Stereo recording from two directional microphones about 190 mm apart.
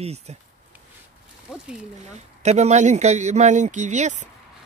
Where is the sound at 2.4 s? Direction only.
35° right (ahead or behind).